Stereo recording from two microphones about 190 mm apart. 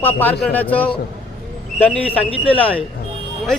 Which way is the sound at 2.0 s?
30° left (ahead or behind).